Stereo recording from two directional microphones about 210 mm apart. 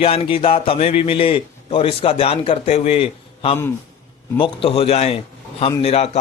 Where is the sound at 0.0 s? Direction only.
25° left (ahead or behind).